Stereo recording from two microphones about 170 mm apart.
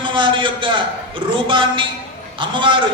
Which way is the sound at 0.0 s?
30° right (ahead or behind).